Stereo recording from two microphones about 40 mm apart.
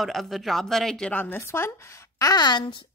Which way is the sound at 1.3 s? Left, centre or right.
Left.